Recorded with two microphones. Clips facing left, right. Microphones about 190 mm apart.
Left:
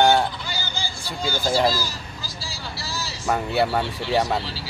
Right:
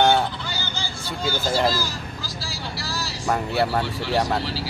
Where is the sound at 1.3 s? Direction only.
10° left (ahead or behind).